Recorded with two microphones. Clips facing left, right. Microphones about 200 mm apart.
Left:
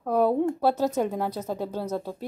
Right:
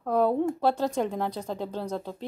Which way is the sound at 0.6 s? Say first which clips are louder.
Left 2 dB; 10° left (ahead or behind).